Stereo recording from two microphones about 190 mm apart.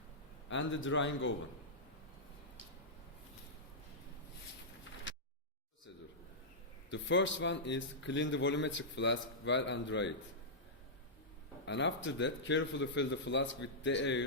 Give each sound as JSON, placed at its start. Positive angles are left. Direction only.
{"t": 0.5, "sound": "a man's voice", "side_deg": 85}
{"t": 5.1, "sound": "a sound", "side_deg": 80}
{"t": 6.9, "sound": "a man's voice", "side_deg": 75}
{"t": 11.6, "sound": "a man's voice", "side_deg": 70}